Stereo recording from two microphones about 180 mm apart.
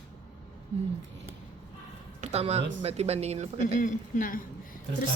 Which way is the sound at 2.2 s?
35° right (ahead or behind).